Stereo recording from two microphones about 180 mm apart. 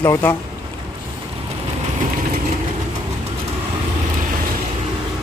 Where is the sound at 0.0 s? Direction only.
10° left (ahead or behind).